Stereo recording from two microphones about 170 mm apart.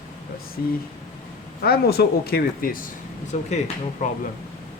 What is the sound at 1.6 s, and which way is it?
Speech, 65° left (ahead or behind).